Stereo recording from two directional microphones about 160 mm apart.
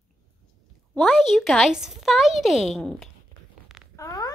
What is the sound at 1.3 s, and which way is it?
Speech, centre (ahead or behind).